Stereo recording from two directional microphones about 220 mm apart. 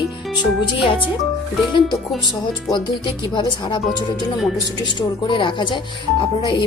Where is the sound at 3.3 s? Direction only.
20° left (ahead or behind).